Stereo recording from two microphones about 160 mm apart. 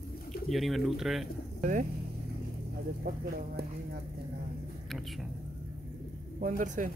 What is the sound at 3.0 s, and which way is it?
Speech, 75° right (ahead or behind).